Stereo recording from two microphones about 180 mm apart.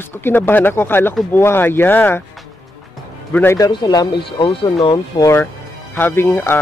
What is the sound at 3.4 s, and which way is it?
Speech, 15° left (ahead or behind).